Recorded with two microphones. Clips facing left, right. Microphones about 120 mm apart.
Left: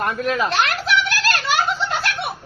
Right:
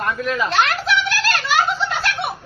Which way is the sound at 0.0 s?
55° left (ahead or behind).